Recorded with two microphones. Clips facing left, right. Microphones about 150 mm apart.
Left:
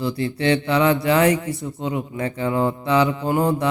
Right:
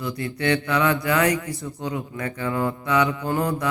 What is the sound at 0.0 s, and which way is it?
Speech, 30° left (ahead or behind).